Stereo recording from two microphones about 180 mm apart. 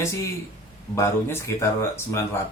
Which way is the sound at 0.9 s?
15° left (ahead or behind).